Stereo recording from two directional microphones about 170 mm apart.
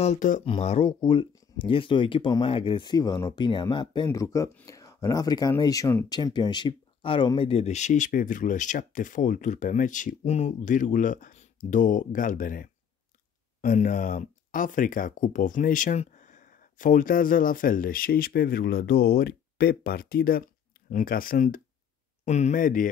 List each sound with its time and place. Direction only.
0.0 s speech: 45° left (ahead or behind)
22.2 s speech: 45° left (ahead or behind)